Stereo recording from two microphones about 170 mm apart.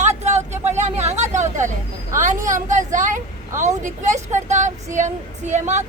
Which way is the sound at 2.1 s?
50° right (ahead or behind).